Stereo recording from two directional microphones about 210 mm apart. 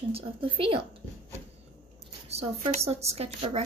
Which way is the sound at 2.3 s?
30° right (ahead or behind).